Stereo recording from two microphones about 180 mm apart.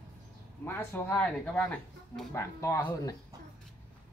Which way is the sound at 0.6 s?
10° left (ahead or behind).